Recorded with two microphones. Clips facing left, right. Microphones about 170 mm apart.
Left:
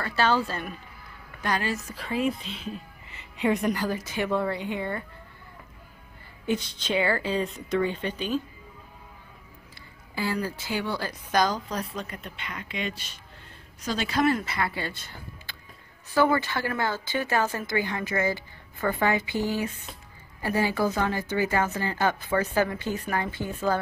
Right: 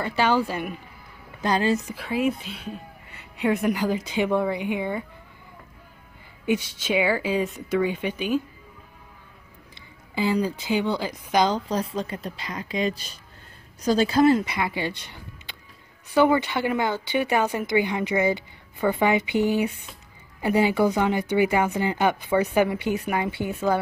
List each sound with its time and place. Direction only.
0.0 s speech: 15° right (ahead or behind)
1.4 s a woman's voice: 25° right (ahead or behind)
1.9 s speech: 10° right (ahead or behind)
6.4 s speech: 10° right (ahead or behind)
9.8 s a woman's voice: 20° right (ahead or behind)
14.4 s speech: 15° right (ahead or behind)